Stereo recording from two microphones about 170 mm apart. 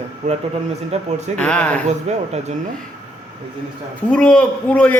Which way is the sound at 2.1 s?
40° right (ahead or behind).